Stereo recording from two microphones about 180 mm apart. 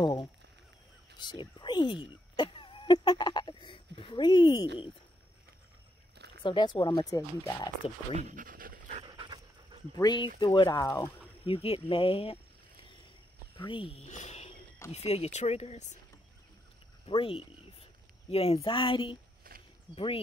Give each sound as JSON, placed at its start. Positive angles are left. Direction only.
{"t": 0.0, "sound": "speech", "side_deg": 25}
{"t": 1.1, "sound": "a sound", "side_deg": 25}
{"t": 6.4, "sound": "speech", "side_deg": 25}
{"t": 8.1, "sound": "dog", "side_deg": -40}
{"t": 9.0, "sound": "dog", "side_deg": -25}
{"t": 9.9, "sound": "speech", "side_deg": 25}
{"t": 11.4, "sound": "speech", "side_deg": 30}
{"t": 13.6, "sound": "speech", "side_deg": 25}
{"t": 17.0, "sound": "a sound", "side_deg": 30}
{"t": 18.3, "sound": "speech", "side_deg": 35}